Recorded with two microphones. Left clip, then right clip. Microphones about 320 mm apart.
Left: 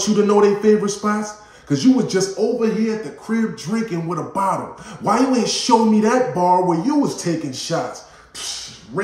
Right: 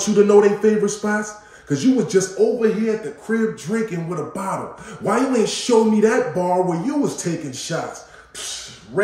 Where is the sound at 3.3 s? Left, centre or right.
Centre.